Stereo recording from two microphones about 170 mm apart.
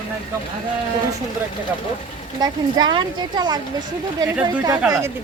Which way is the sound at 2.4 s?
25° right (ahead or behind).